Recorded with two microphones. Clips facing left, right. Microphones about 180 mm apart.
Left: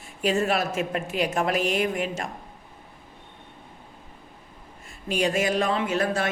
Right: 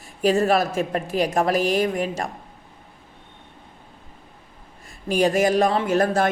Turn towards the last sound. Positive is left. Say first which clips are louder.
# right 5 dB
turn(degrees=-40)  # may be behind; listen again after turning